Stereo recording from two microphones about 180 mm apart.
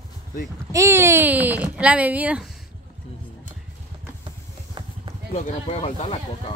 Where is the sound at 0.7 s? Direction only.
15° right (ahead or behind).